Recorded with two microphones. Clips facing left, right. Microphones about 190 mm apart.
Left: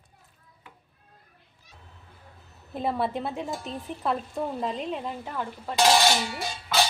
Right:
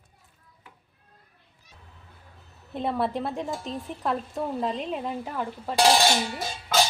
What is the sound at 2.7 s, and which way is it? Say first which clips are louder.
Speech: right 1 dB; centre (ahead or behind).